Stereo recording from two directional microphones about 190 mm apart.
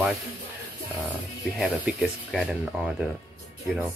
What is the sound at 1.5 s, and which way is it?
Speech, 5° right (ahead or behind).